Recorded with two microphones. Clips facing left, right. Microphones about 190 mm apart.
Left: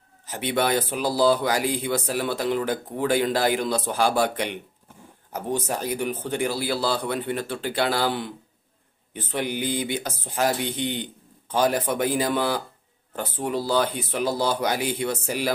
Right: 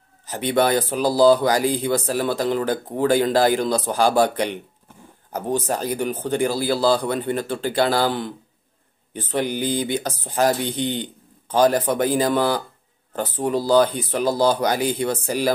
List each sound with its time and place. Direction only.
0.3 s speech: 40° right (ahead or behind)
5.7 s speech: 35° right (ahead or behind)